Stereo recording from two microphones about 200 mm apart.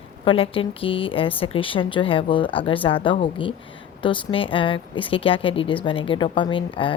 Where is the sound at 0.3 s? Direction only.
25° left (ahead or behind).